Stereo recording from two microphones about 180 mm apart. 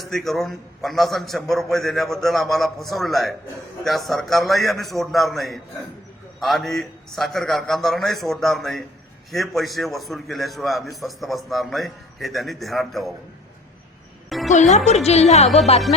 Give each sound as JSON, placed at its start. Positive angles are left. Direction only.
{"t": 0.0, "sound": "a man's voice", "side_deg": 0}
{"t": 14.3, "sound": "music", "side_deg": 0}
{"t": 14.5, "sound": "a woman's voice", "side_deg": 40}